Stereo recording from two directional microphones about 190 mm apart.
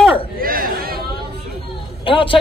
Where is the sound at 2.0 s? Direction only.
25° left (ahead or behind).